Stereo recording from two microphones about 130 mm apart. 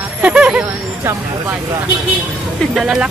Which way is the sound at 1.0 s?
20° right (ahead or behind).